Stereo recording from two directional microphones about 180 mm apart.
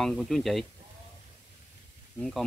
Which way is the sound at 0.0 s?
Centre (ahead or behind).